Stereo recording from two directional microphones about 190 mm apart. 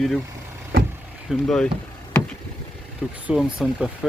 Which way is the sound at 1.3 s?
5° left (ahead or behind).